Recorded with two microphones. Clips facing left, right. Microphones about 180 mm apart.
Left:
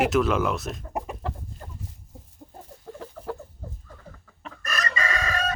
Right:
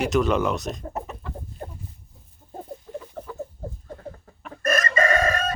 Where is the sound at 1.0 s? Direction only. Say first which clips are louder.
Left 1 dB; 10° left (ahead or behind).